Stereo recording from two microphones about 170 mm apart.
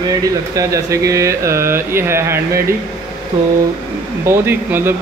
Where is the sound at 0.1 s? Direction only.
20° right (ahead or behind).